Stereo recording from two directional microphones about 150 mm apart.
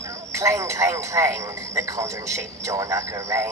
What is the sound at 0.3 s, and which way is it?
Speech, 20° right (ahead or behind).